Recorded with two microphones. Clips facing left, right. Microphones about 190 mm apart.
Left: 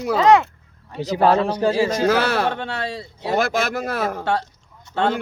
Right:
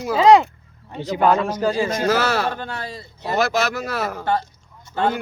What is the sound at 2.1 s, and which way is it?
Speech, 55° left (ahead or behind).